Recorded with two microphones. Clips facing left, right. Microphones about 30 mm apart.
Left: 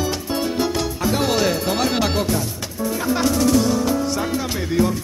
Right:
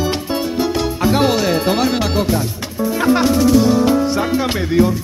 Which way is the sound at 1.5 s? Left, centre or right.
Right.